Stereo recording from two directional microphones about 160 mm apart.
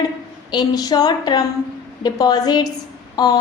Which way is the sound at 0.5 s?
25° left (ahead or behind).